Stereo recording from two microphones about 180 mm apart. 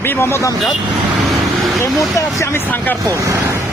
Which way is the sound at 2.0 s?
15° left (ahead or behind).